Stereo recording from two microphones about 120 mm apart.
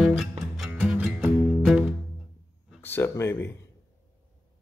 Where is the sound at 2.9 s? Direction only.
20° left (ahead or behind).